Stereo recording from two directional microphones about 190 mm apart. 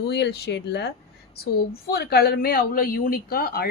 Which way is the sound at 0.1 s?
60° left (ahead or behind).